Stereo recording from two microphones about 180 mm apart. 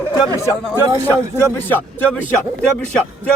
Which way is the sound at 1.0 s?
10° left (ahead or behind).